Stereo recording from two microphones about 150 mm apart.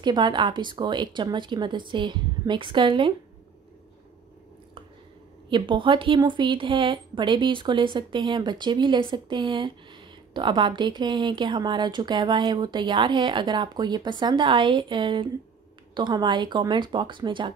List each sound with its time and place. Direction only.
0.0 s speech: 30° right (ahead or behind)
5.5 s speech: 35° right (ahead or behind)